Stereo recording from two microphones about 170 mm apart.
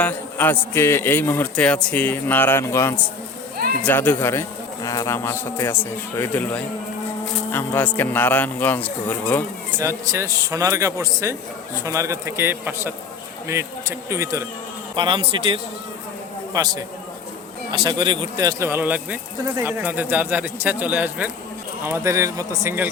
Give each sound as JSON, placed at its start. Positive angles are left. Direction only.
{"t": 0.0, "sound": "a man's voice", "side_deg": 10}
{"t": 9.7, "sound": "speech", "side_deg": -15}
{"t": 14.9, "sound": "a man's voice", "side_deg": -30}